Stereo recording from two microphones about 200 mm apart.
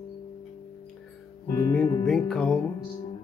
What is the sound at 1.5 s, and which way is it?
Music, 20° left (ahead or behind).